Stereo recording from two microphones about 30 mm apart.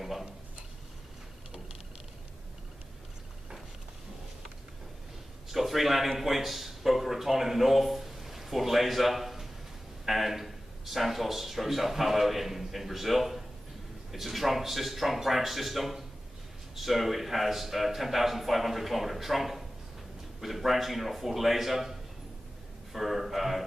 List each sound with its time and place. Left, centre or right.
5.5 s a man's voice: centre
22.9 s a man's voice: centre